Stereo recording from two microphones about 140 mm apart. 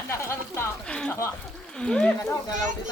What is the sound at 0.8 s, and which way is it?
Speech, 5° left (ahead or behind).